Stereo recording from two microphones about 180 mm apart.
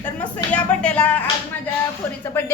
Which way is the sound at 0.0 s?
10° left (ahead or behind).